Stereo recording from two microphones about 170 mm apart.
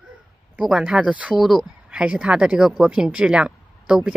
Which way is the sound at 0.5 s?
5° right (ahead or behind).